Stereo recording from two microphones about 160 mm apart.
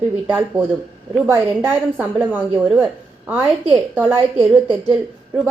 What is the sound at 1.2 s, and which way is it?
A woman's voice, 15° right (ahead or behind).